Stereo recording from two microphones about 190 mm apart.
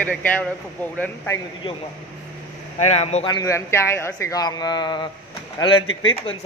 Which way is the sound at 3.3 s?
15° left (ahead or behind).